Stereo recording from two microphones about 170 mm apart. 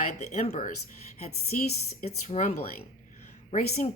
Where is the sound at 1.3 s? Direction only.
55° left (ahead or behind).